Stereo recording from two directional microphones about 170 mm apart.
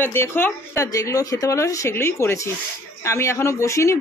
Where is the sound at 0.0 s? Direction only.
15° left (ahead or behind).